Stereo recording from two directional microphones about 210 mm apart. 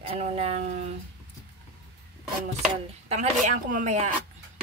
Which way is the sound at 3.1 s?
35° right (ahead or behind).